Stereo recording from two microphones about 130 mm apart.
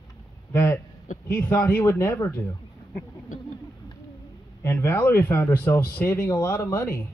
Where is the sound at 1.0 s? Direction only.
80° left.